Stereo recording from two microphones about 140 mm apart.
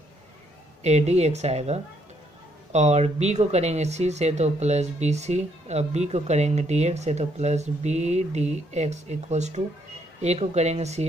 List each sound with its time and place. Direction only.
0.8 s speech: 50° right (ahead or behind)